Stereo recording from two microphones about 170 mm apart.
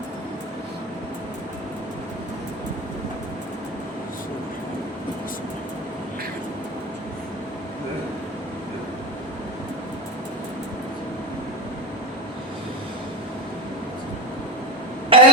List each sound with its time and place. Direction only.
15.1 s throat clearing: 30° right (ahead or behind)